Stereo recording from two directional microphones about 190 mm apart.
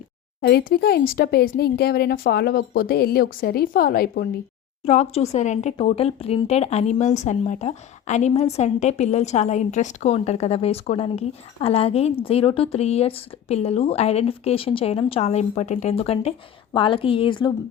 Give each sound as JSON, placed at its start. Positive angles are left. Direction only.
{"t": 0.4, "sound": "speech", "side_deg": 55}
{"t": 4.9, "sound": "a woman's voice", "side_deg": 35}